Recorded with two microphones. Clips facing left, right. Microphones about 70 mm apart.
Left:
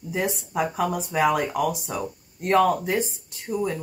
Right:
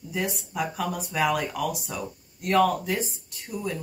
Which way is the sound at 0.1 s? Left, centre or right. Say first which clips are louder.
Left 4 dB; left.